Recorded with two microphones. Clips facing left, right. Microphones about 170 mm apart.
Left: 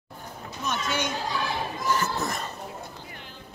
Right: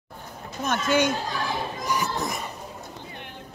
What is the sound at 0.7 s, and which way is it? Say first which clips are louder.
Speech: right 7 dB; 50° right (ahead or behind).